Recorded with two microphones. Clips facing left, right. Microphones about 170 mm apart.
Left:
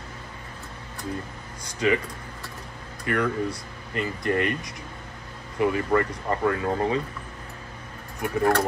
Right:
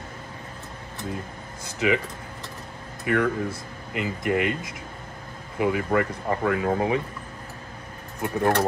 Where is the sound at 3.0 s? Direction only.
20° right (ahead or behind).